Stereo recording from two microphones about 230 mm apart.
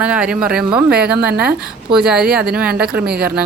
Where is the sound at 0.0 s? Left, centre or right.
Centre.